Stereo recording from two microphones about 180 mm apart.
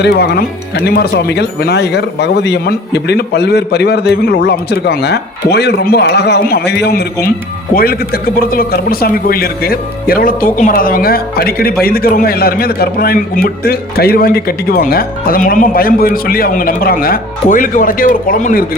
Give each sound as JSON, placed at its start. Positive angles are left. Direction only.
{"t": 0.0, "sound": "speech", "side_deg": 60}